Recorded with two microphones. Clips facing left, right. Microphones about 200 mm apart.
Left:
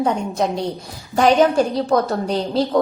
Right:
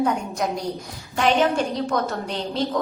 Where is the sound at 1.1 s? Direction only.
40° left (ahead or behind).